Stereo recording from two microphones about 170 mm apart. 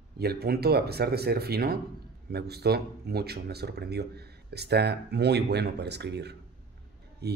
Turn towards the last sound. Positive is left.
turn(degrees=-75)  # may be behind; listen again after turning